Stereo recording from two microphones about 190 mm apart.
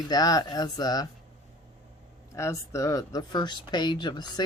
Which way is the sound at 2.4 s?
15° left (ahead or behind).